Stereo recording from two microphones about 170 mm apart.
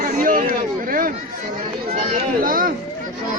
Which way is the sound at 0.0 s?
55° right (ahead or behind).